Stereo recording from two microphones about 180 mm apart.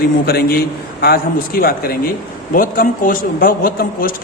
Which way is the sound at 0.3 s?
60° left (ahead or behind).